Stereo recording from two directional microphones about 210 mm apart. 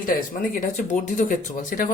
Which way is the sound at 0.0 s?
40° left (ahead or behind).